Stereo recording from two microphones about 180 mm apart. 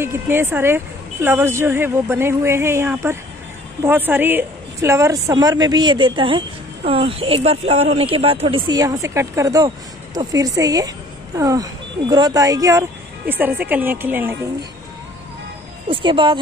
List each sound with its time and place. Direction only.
0.0 s a woman's voice: 15° right (ahead or behind)
15.9 s a woman's voice: 25° right (ahead or behind)